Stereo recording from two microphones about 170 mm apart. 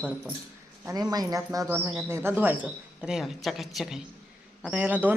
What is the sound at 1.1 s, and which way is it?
Speech, 20° right (ahead or behind).